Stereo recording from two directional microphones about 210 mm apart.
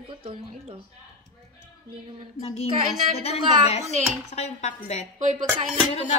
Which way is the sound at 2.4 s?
30° left (ahead or behind).